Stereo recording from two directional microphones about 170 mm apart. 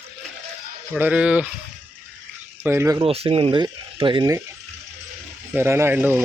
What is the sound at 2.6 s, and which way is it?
Speech, 15° right (ahead or behind).